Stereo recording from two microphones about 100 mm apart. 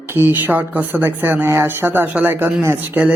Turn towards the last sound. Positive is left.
turn(degrees=-15)  # may be behind; listen again after turning